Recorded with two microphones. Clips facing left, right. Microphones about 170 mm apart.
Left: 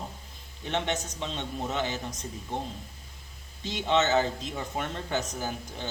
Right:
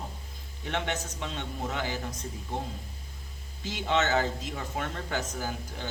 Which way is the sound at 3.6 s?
20° left (ahead or behind).